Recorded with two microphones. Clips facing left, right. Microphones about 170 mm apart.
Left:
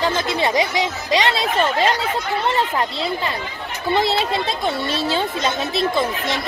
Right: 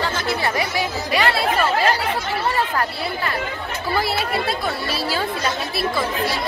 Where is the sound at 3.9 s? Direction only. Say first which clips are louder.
Left 3 dB; 25° left (ahead or behind).